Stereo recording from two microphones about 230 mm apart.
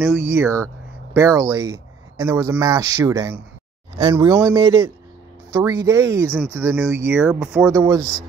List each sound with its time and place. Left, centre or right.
0.0 s speech: centre